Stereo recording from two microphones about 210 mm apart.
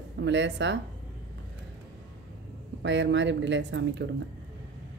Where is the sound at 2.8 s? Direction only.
60° right (ahead or behind).